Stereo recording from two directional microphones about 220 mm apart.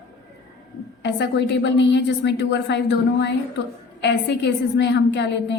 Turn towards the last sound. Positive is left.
turn(degrees=50)  # may be behind; listen again after turning